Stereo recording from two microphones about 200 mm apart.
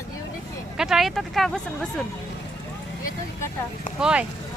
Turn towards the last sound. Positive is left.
turn(degrees=-5)  # may be behind; listen again after turning